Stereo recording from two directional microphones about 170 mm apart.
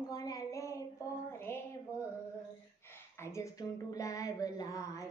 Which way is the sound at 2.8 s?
15° left (ahead or behind).